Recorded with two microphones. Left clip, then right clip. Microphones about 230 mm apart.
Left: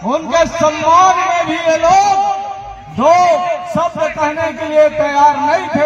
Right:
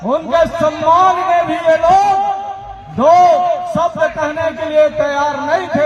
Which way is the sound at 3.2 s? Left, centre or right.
Right.